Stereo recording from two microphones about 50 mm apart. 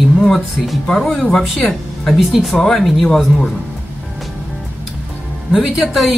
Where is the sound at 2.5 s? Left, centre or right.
Centre.